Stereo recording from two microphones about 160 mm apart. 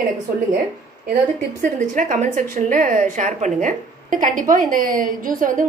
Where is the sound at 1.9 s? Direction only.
55° right (ahead or behind).